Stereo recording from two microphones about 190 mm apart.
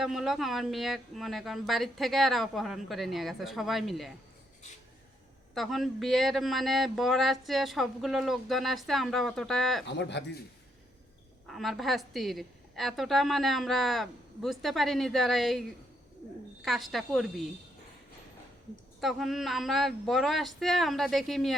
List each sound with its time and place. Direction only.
0.0 s a man's voice: centre (ahead or behind)
5.5 s a man's voice: centre (ahead or behind)
9.8 s speech: 65° left (ahead or behind)
11.4 s a man's voice: centre (ahead or behind)
16.6 s a man's voice: centre (ahead or behind)
18.9 s a man's voice: centre (ahead or behind)